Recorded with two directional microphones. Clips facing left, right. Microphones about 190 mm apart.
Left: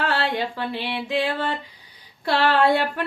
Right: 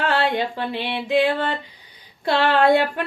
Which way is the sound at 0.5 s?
20° right (ahead or behind).